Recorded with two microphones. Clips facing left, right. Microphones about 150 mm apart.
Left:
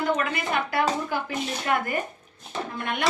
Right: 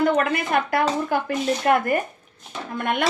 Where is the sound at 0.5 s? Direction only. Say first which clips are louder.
Right 6 dB; 50° right (ahead or behind).